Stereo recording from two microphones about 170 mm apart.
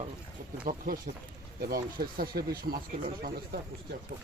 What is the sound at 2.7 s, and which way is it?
Speech, 45° right (ahead or behind).